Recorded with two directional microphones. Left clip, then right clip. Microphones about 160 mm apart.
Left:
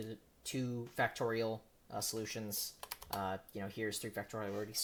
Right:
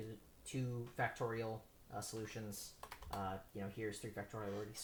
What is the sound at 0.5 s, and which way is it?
Speech, 40° left (ahead or behind).